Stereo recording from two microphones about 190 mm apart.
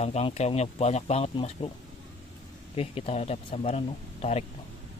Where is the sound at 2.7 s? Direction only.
30° left (ahead or behind).